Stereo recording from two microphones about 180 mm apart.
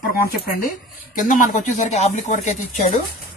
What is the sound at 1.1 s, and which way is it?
Speech, 50° left (ahead or behind).